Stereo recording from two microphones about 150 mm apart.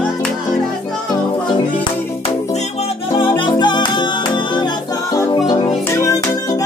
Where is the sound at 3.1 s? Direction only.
35° left (ahead or behind).